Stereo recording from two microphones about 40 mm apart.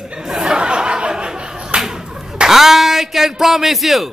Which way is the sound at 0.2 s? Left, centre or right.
Centre.